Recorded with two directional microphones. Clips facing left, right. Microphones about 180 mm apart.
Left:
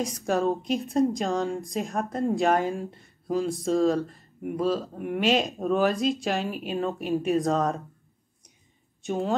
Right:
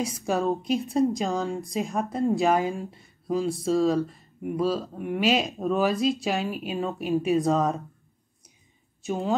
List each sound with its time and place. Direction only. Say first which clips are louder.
0.0 s a woman's voice: left 1 dB; centre (ahead or behind)
9.0 s a woman's voice: even; centre (ahead or behind)